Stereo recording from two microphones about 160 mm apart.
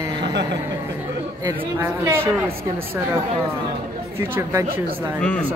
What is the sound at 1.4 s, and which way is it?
A man's voice, 15° right (ahead or behind).